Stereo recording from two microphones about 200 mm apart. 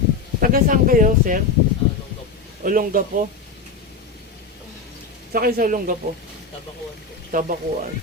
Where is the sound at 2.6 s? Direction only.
45° right (ahead or behind).